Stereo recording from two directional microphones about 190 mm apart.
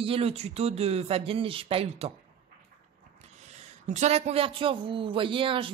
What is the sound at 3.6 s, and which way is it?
Speech, 35° right (ahead or behind).